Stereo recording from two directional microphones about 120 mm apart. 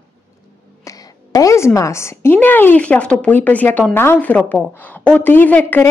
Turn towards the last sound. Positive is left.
turn(degrees=15)  # may be behind; listen again after turning